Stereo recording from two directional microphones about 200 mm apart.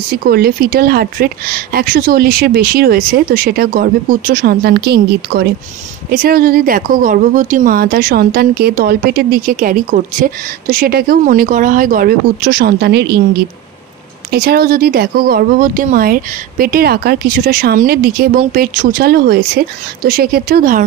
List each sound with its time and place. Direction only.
0.3 s a woman's voice: 50° right (ahead or behind)